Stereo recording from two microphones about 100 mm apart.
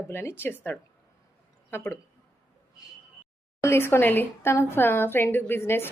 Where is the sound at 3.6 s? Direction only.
25° left (ahead or behind).